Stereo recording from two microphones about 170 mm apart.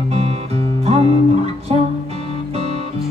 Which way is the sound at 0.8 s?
35° right (ahead or behind).